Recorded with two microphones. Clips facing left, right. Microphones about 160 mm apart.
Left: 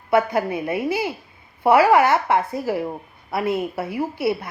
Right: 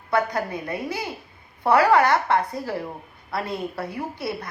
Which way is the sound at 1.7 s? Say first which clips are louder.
Left 2 dB; 25° left (ahead or behind).